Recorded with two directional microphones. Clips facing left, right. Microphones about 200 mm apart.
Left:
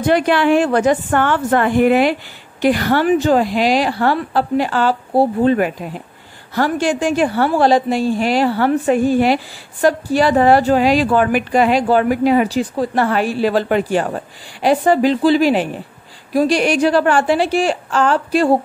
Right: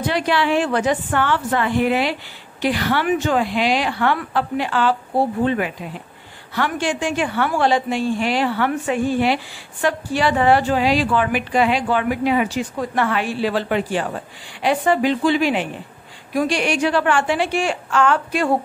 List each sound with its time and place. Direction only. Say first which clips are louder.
0.0 s a woman's voice: left 6 dB; 50° left (ahead or behind); by 18.5 s 35° left (ahead or behind)